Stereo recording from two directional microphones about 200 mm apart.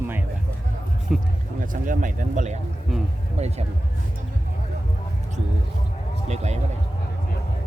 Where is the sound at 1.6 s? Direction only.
40° right (ahead or behind).